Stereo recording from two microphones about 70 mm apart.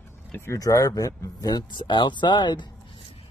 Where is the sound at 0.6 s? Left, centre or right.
Left.